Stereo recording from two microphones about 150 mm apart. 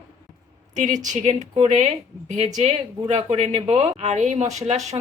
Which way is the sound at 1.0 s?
50° right (ahead or behind).